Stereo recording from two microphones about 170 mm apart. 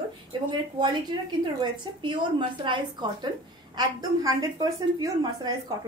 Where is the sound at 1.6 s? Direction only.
30° right (ahead or behind).